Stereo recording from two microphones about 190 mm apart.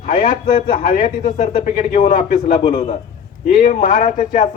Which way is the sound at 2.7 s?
30° left (ahead or behind).